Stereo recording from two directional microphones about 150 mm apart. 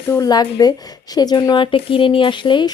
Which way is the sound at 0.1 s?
25° left (ahead or behind).